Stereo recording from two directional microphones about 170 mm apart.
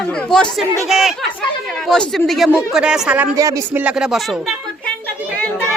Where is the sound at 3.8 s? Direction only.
5° right (ahead or behind).